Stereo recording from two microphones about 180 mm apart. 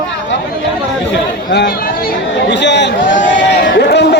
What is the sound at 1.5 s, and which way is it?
Speech, 60° left (ahead or behind).